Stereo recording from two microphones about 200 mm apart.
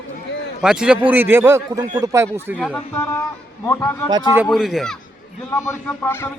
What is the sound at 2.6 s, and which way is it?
Speech, 10° left (ahead or behind).